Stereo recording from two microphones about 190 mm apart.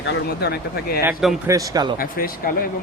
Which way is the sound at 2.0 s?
50° left (ahead or behind).